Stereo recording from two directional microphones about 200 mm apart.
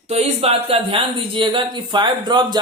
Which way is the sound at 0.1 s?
30° right (ahead or behind).